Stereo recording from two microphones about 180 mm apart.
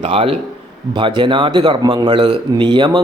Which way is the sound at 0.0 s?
30° right (ahead or behind).